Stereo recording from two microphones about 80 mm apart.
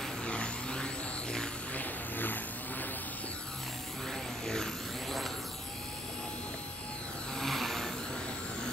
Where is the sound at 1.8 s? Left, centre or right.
Left.